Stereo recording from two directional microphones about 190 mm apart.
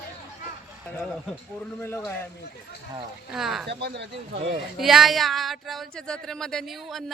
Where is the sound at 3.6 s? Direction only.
65° right (ahead or behind).